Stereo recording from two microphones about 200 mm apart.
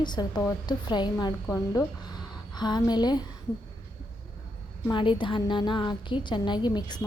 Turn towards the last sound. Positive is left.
turn(degrees=20)  # may be behind; listen again after turning